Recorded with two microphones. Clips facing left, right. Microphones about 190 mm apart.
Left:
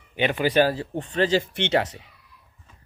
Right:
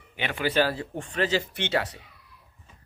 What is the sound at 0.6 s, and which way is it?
Speech, 40° left (ahead or behind).